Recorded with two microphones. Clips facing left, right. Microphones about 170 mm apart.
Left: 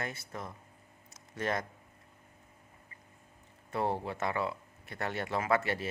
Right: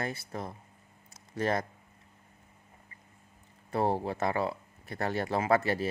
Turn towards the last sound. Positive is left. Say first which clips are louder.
# right 4 dB
turn(degrees=-35)  # may be behind; listen again after turning